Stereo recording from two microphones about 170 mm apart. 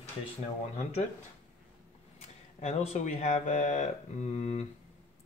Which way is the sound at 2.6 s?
40° left (ahead or behind).